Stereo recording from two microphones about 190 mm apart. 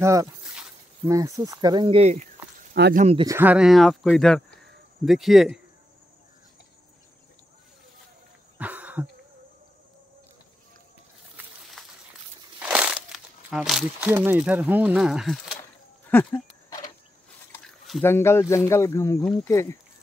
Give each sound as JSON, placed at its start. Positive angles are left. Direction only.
{"t": 0.0, "sound": "speech", "side_deg": -15}
{"t": 2.7, "sound": "speech", "side_deg": -50}
{"t": 3.3, "sound": "speech", "side_deg": -10}
{"t": 8.5, "sound": "cough", "side_deg": -10}
{"t": 12.5, "sound": "crumpling", "side_deg": -5}
{"t": 14.1, "sound": "speech", "side_deg": -10}
{"t": 16.1, "sound": "a sound", "side_deg": 10}
{"t": 18.0, "sound": "speech", "side_deg": 15}